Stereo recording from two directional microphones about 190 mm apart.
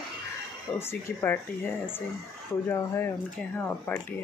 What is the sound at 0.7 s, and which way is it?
Speech, 10° left (ahead or behind).